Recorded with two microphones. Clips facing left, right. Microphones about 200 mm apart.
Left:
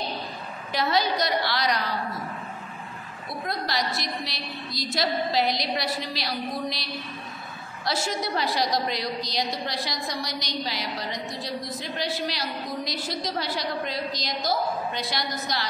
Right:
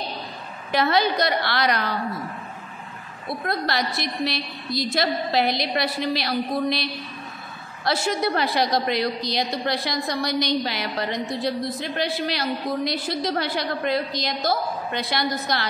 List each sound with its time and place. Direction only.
0.7 s a woman's voice: 60° right (ahead or behind)
3.4 s a woman's voice: 60° right (ahead or behind)